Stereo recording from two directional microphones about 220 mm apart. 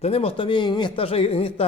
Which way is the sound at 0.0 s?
25° left (ahead or behind).